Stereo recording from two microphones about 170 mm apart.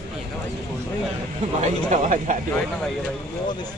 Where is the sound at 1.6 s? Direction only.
45° right (ahead or behind).